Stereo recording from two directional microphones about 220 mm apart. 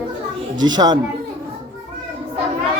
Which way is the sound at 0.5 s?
20° right (ahead or behind).